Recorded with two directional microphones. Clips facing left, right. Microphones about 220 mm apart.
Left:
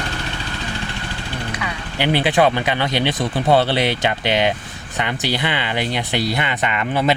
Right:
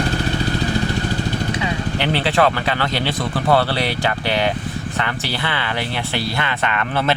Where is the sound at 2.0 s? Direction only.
15° left (ahead or behind).